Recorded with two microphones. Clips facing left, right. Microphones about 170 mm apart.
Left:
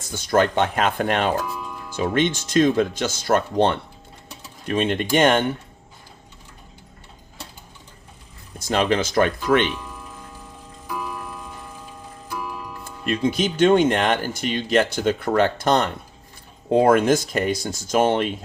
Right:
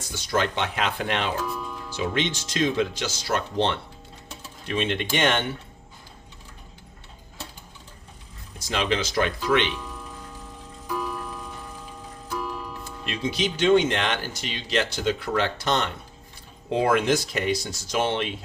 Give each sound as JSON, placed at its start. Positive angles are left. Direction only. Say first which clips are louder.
{"t": 0.1, "sound": "speech", "louder": "left 6 dB", "side_deg": 50}
{"t": 8.5, "sound": "speech", "louder": "left 5 dB", "side_deg": 50}
{"t": 10.9, "sound": "tick-tock", "louder": "even", "side_deg": 10}
{"t": 13.1, "sound": "speech", "louder": "left 6 dB", "side_deg": 50}